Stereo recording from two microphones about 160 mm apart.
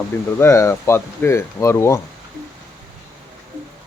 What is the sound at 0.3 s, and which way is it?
Speech, 15° left (ahead or behind).